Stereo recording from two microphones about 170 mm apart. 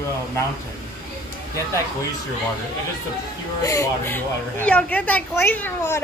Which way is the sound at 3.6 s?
15° left (ahead or behind).